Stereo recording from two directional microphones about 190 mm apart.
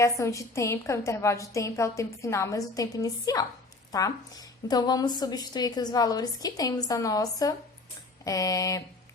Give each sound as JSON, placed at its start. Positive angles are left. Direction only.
{"t": 0.0, "sound": "a woman's voice", "side_deg": 15}